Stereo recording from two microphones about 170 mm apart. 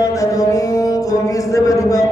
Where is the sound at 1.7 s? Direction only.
20° left (ahead or behind).